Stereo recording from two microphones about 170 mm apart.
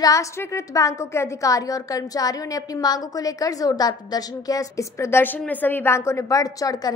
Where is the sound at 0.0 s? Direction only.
20° left (ahead or behind).